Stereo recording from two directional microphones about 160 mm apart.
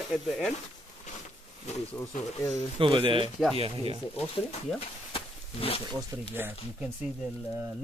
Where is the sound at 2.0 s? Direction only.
20° left (ahead or behind).